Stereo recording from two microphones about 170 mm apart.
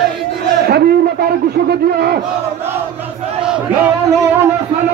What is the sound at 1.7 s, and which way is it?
Speech, 70° right (ahead or behind).